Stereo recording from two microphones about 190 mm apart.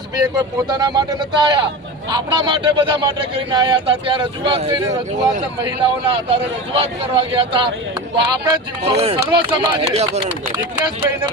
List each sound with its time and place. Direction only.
0.3 s a man's voice: 20° right (ahead or behind)